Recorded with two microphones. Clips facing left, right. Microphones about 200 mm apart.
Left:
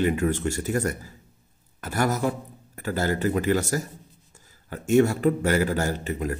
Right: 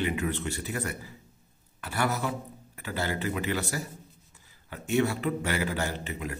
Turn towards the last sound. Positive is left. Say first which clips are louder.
# left 7 dB
turn(degrees=40)  # may be behind; listen again after turning